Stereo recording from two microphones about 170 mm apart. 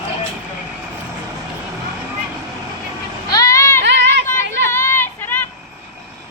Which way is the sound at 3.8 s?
90° right.